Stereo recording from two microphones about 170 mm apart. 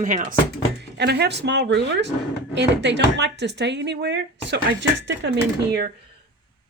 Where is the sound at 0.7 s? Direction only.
80° right.